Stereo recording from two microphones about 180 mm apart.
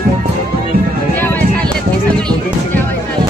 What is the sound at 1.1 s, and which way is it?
Music, 10° left (ahead or behind).